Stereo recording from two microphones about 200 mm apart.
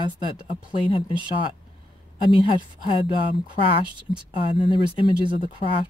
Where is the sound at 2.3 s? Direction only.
25° left (ahead or behind).